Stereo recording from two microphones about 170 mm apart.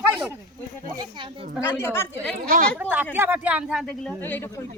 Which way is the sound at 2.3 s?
55° right (ahead or behind).